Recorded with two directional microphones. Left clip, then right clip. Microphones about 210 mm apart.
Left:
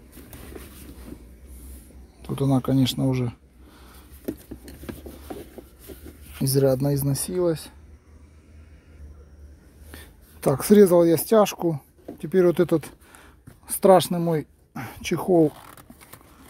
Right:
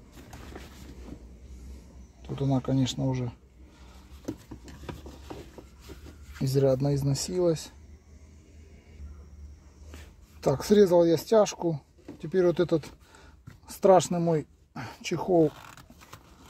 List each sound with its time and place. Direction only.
2.2 s speech: 20° left (ahead or behind)
6.4 s speech: 15° left (ahead or behind)
7.3 s speech: centre (ahead or behind)
10.4 s speech: 15° left (ahead or behind)